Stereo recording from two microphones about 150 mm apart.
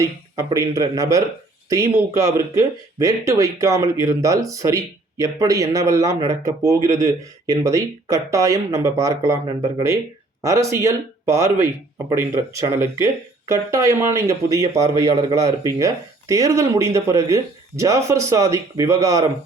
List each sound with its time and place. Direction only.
0.0 s speech: 20° right (ahead or behind)